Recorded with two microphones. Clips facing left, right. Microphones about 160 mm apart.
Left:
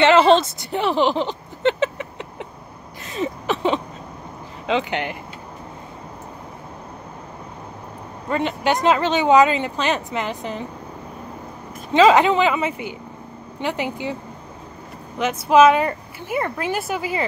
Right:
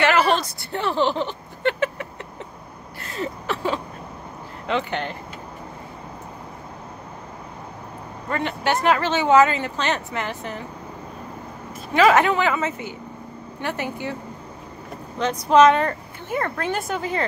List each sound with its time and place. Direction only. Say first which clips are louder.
0.0 s a sound: left 6 dB; 25° left (ahead or behind)
4.6 s speech: left 3 dB; 15° left (ahead or behind)
8.3 s speech: left 3 dB; 15° left (ahead or behind)
11.9 s speech: left 3 dB; 20° left (ahead or behind)
15.1 s speech: left 1 dB; 5° left (ahead or behind)